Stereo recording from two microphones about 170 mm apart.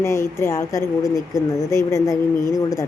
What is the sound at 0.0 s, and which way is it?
Speech, 15° left (ahead or behind).